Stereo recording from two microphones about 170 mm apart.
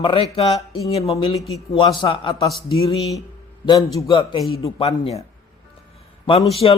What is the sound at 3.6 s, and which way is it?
A man's voice, 25° left (ahead or behind).